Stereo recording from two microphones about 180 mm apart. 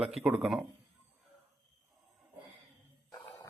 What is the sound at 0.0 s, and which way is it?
Speech, 5° right (ahead or behind).